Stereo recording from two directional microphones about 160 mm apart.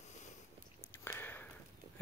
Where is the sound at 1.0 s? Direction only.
15° left (ahead or behind).